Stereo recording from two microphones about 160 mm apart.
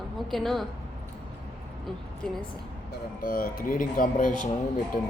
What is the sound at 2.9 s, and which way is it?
Speech, 60° left (ahead or behind).